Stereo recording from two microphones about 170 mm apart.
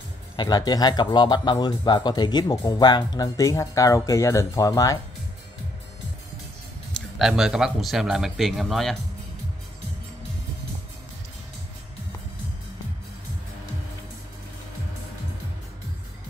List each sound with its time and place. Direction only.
0.4 s speech: 25° left (ahead or behind)
6.9 s speech: centre (ahead or behind)